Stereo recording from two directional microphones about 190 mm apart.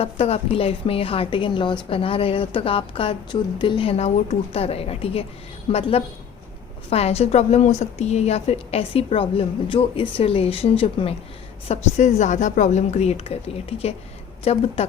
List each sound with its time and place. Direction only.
0.0 s a woman's voice: 30° left (ahead or behind)